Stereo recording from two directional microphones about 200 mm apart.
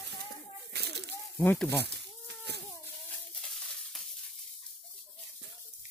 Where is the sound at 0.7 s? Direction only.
55° right (ahead or behind).